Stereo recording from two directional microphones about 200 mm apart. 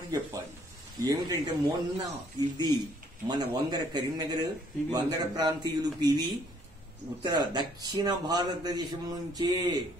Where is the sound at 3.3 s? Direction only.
20° right (ahead or behind).